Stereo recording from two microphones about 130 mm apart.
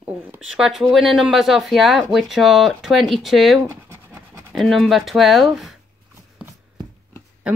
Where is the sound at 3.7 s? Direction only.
25° right (ahead or behind).